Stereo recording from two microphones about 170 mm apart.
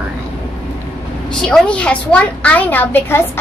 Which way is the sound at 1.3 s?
5° left (ahead or behind).